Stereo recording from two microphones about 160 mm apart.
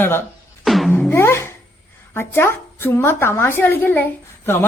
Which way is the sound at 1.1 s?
15° left (ahead or behind).